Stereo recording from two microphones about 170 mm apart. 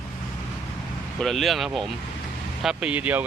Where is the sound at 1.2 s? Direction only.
Centre (ahead or behind).